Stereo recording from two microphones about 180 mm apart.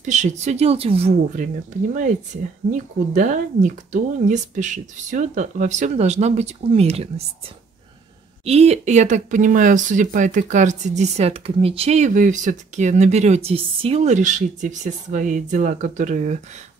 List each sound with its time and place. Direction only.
0.0 s speech: 40° right (ahead or behind)
3.2 s speech: 45° right (ahead or behind)
8.5 s speech: 35° right (ahead or behind)